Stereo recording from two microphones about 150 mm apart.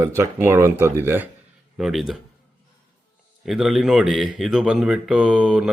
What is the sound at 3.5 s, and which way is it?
Speech, centre (ahead or behind).